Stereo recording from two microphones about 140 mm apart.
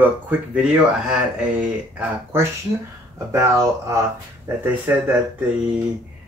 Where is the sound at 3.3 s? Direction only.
25° right (ahead or behind).